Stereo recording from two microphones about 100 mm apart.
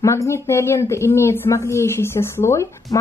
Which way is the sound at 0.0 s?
30° left (ahead or behind).